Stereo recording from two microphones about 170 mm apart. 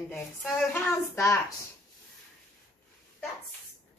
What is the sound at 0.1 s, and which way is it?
Speech, 5° left (ahead or behind).